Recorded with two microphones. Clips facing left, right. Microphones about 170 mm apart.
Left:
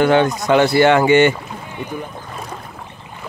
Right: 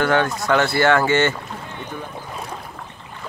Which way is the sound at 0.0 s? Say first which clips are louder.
Left 5 dB; 20° left (ahead or behind).